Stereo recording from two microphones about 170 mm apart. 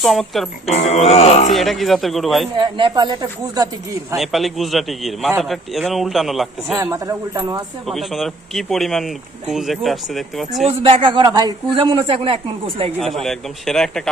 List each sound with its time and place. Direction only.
0.0 s speech: centre (ahead or behind)
0.6 s speech: 40° left (ahead or behind)
1.5 s speech: centre (ahead or behind)
2.6 s speech: 25° right (ahead or behind)
4.2 s speech: centre (ahead or behind)
6.9 s speech: 20° right (ahead or behind)
7.9 s speech: centre (ahead or behind)
11.0 s speech: 25° right (ahead or behind)
13.1 s speech: centre (ahead or behind)